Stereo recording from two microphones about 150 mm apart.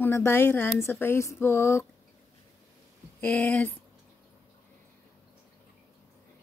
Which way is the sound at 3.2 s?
10° left (ahead or behind).